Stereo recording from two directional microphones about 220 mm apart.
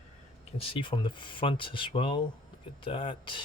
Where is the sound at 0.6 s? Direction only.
25° left (ahead or behind).